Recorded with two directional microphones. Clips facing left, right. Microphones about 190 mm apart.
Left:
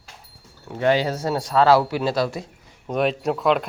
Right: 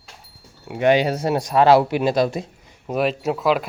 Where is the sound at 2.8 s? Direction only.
5° right (ahead or behind).